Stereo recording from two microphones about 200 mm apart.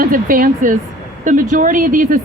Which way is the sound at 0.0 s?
45° right (ahead or behind).